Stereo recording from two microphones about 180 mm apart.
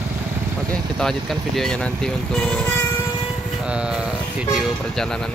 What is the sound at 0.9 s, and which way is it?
Speech, centre (ahead or behind).